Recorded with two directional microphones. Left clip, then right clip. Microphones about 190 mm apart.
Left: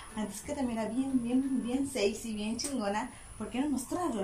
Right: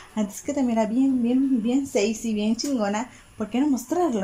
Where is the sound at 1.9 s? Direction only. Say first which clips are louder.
Right 8 dB; 50° right (ahead or behind).